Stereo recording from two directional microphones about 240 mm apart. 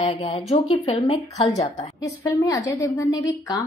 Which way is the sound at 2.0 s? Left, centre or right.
Centre.